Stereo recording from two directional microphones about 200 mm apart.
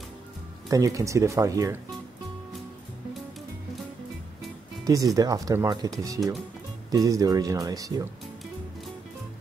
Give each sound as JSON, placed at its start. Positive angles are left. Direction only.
{"t": 0.7, "sound": "speech", "side_deg": -15}
{"t": 5.1, "sound": "speech", "side_deg": -15}